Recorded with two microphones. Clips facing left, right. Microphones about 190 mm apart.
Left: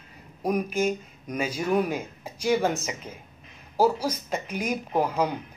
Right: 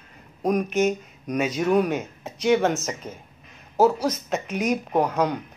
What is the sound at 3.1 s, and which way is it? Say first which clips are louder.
Speech: right 4 dB; 30° right (ahead or behind).